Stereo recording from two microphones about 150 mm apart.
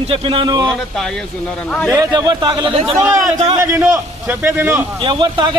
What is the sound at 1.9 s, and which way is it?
Speech, 25° right (ahead or behind).